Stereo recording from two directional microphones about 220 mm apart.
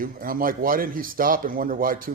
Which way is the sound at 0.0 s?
40° right (ahead or behind).